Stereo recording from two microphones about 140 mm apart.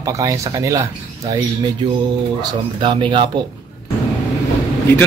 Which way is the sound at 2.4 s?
35° right (ahead or behind).